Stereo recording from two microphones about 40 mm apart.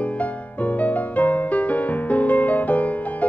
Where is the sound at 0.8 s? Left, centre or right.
Left.